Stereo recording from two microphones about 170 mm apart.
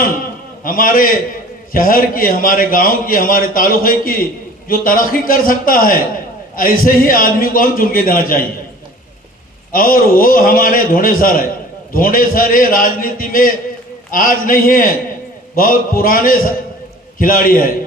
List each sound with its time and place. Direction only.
0.6 s a man's voice: 55° left (ahead or behind)
9.7 s a man's voice: 55° left (ahead or behind)